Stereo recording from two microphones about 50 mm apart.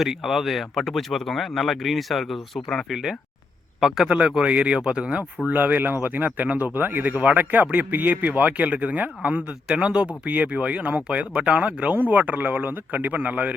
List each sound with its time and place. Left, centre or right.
0.0 s speech: centre
4.5 s speech: right
5.5 s speech: right
12.0 s speech: right